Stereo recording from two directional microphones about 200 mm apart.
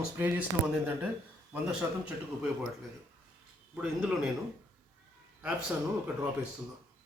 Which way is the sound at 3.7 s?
5° right (ahead or behind).